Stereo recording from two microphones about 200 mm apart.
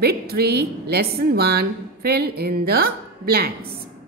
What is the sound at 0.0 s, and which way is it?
A woman's voice, 50° right (ahead or behind).